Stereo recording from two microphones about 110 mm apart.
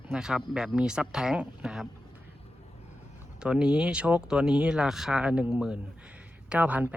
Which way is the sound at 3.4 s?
10° right (ahead or behind).